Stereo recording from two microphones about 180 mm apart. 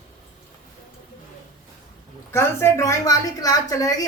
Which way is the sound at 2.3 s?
15° left (ahead or behind).